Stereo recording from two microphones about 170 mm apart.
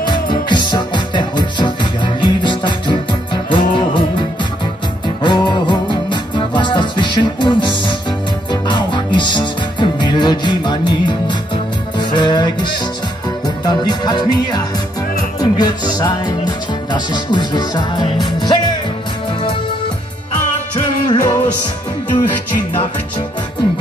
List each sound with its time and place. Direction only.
0.0 s music: 25° left (ahead or behind)
5.0 s music: 25° left (ahead or behind)
13.7 s music: 25° left (ahead or behind)
21.1 s music: 25° left (ahead or behind)